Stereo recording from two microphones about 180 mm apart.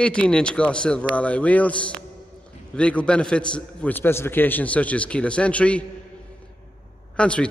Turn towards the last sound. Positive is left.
turn(degrees=5)  # may be behind; listen again after turning